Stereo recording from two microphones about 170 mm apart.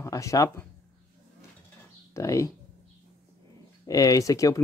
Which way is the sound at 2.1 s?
20° left (ahead or behind).